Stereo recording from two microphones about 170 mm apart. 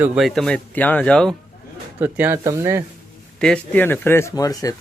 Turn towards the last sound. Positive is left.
turn(degrees=20)  # may be behind; listen again after turning